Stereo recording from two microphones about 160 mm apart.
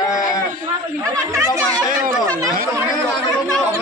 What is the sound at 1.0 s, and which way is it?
Speech, 20° right (ahead or behind).